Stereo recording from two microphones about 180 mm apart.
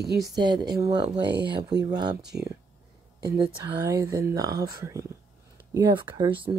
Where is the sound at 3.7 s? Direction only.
20° right (ahead or behind).